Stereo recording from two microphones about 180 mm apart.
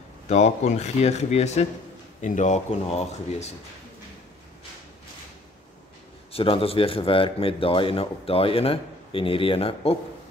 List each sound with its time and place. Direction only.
0.3 s speech: 40° left (ahead or behind)
6.3 s speech: 30° left (ahead or behind)